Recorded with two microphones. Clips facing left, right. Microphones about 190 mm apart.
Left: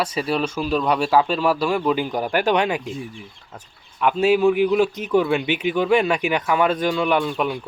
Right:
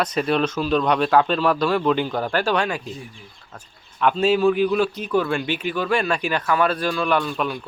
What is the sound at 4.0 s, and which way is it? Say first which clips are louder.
Speech: left 1 dB; 10° left (ahead or behind).